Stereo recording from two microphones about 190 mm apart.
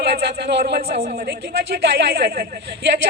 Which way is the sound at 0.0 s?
60° right (ahead or behind).